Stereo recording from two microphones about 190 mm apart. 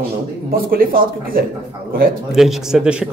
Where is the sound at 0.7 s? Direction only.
50° right (ahead or behind).